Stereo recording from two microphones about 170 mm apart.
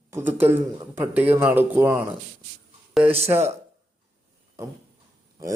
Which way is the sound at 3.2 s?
15° right (ahead or behind).